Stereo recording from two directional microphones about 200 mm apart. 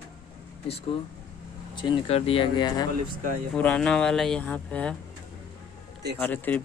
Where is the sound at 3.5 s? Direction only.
5° left (ahead or behind).